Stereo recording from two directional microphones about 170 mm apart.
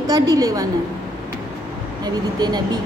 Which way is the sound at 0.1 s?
20° right (ahead or behind).